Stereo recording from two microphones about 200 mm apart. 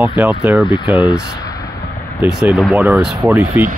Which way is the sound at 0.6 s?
25° left (ahead or behind).